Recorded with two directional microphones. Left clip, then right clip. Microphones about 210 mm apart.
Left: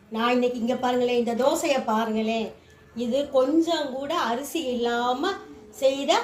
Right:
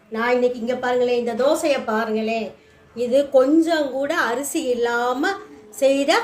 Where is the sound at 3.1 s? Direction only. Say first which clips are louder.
Right 6 dB; 40° right (ahead or behind).